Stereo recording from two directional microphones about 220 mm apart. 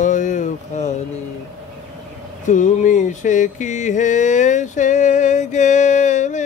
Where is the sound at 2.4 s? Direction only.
35° left (ahead or behind).